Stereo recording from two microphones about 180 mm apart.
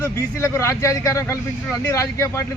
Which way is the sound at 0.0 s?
15° left (ahead or behind).